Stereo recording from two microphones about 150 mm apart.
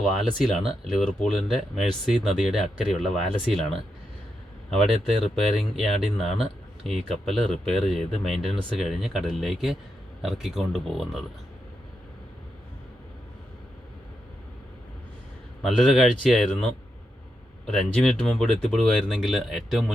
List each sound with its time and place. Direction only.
0.9 s speech: centre (ahead or behind)
4.9 s speech: 40° right (ahead or behind)
5.2 s speech: centre (ahead or behind)
15.6 s speech: centre (ahead or behind)
17.7 s speech: 5° left (ahead or behind)